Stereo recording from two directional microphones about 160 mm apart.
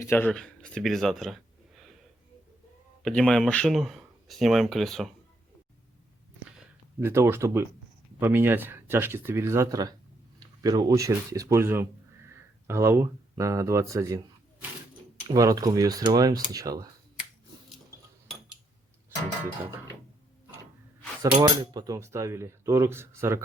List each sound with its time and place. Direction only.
0.0 s speech: 15° left (ahead or behind)
3.0 s speech: 5° left (ahead or behind)
7.0 s speech: 15° right (ahead or behind)
15.3 s speech: 20° right (ahead or behind)
21.4 s speech: 25° right (ahead or behind)